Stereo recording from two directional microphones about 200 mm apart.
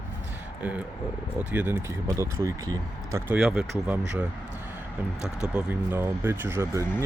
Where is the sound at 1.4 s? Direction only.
10° right (ahead or behind).